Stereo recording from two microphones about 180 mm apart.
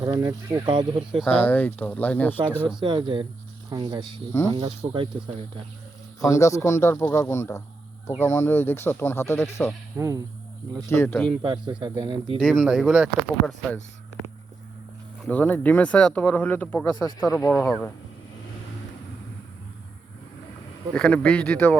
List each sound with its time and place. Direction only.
0.0 s speech: 25° right (ahead or behind)
1.2 s speech: 10° left (ahead or behind)
2.6 s speech: 25° right (ahead or behind)
6.1 s speech: 15° left (ahead or behind)
10.0 s speech: 15° right (ahead or behind)
10.8 s speech: 15° left (ahead or behind)
11.3 s speech: 30° right (ahead or behind)
12.4 s speech: centre (ahead or behind)
15.2 s speech: 10° left (ahead or behind)
17.2 s speech: centre (ahead or behind)
20.9 s speech: 5° left (ahead or behind)